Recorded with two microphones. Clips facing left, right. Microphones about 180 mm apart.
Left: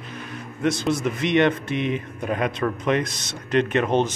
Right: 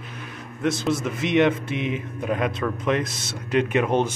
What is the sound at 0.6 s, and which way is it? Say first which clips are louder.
A man's voice: left 1 dB; centre (ahead or behind).